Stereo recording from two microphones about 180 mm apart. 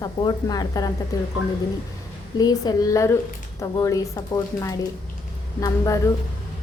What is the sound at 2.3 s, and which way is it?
A woman's voice, 20° left (ahead or behind).